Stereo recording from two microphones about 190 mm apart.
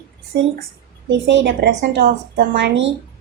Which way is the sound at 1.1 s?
75° right (ahead or behind).